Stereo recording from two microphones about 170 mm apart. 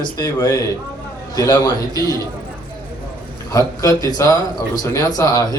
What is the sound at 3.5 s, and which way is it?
A man's voice, 20° left (ahead or behind).